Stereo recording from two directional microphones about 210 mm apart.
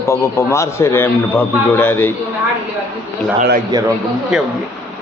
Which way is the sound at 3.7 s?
20° right (ahead or behind).